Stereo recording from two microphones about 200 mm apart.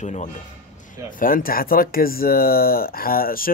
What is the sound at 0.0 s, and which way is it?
A man's voice, 35° left (ahead or behind).